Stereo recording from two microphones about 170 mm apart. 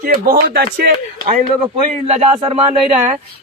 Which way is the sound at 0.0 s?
60° right (ahead or behind).